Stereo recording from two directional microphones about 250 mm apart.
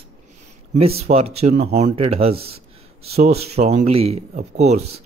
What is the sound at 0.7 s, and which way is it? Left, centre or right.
Speech, right.